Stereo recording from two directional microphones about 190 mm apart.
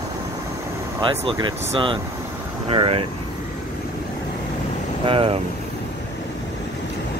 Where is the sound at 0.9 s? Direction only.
25° right (ahead or behind).